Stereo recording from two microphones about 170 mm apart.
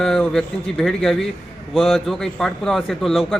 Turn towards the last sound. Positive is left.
turn(degrees=0)  # may be behind; listen again after turning